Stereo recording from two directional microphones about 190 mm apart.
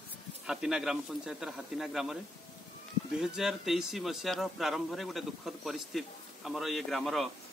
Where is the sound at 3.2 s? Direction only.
Centre (ahead or behind).